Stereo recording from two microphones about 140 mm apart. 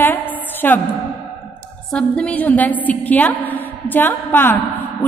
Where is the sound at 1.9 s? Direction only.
5° left (ahead or behind).